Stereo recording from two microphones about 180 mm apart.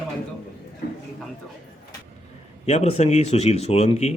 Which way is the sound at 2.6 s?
35° left (ahead or behind).